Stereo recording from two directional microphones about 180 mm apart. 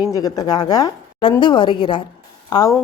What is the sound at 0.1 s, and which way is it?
Speech, 20° left (ahead or behind).